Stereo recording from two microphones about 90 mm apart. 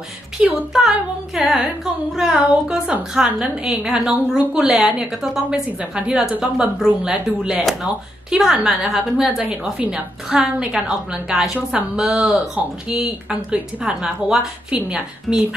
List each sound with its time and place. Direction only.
0.4 s a woman's voice: 10° right (ahead or behind)
5.7 s a woman's voice: 15° right (ahead or behind)
11.5 s speech: 20° right (ahead or behind)
12.0 s a woman's voice: 5° right (ahead or behind)